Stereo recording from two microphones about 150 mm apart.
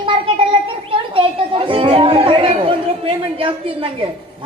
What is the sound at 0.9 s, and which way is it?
Chatter, 35° right (ahead or behind).